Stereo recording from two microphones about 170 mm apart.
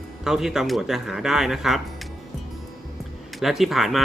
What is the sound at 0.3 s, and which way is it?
Speech, 5° right (ahead or behind).